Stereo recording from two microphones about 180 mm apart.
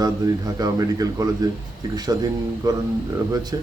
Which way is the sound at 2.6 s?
20° right (ahead or behind).